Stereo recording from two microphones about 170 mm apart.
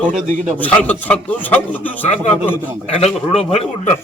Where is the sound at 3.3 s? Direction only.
40° left (ahead or behind).